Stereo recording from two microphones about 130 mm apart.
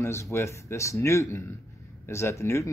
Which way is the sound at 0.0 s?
20° left (ahead or behind).